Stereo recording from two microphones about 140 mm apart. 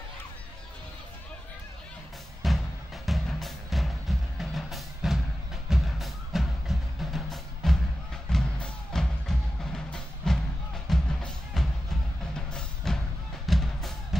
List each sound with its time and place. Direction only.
2.4 s music: centre (ahead or behind)